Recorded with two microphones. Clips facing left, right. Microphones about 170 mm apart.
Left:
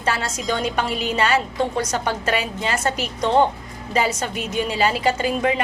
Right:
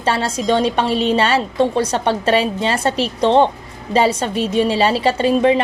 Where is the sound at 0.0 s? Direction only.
30° right (ahead or behind).